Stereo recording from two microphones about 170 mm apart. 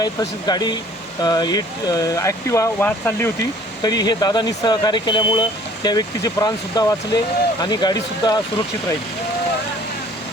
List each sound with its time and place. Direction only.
0.0 s speech: 25° left (ahead or behind)